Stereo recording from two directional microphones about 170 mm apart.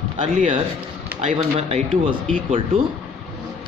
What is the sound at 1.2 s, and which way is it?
Speech, 40° right (ahead or behind).